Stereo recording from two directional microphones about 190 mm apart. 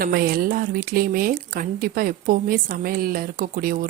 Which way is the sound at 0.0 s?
50° right (ahead or behind).